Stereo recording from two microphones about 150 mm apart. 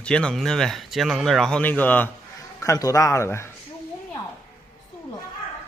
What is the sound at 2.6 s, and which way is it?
Speech, 20° left (ahead or behind).